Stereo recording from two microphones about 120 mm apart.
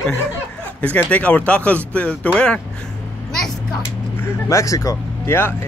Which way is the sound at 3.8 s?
20° left (ahead or behind).